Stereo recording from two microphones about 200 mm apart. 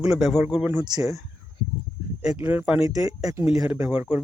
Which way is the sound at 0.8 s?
20° right (ahead or behind).